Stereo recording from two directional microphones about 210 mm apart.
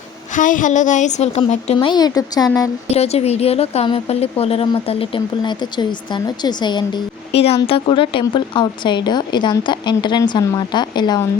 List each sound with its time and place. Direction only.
0.3 s a woman's voice: 40° left (ahead or behind); by 2.6 s 15° left (ahead or behind)
2.9 s speech: 30° left (ahead or behind)